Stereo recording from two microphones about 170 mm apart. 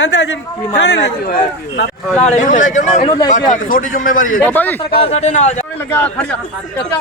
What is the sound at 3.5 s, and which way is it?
Speech, 55° left (ahead or behind).